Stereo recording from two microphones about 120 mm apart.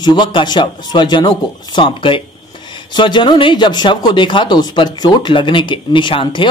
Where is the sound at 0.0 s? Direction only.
40° left (ahead or behind).